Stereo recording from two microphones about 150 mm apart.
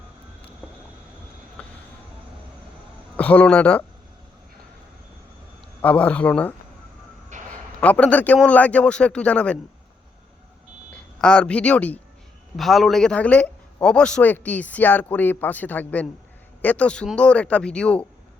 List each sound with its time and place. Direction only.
1.6 s vehicle: 10° left (ahead or behind)
3.2 s a man's voice: 10° left (ahead or behind)
5.8 s a man's voice: 10° left (ahead or behind)
7.3 s a sound: 55° right (ahead or behind)
7.8 s a man's voice: 10° left (ahead or behind)
11.2 s a man's voice: 5° left (ahead or behind)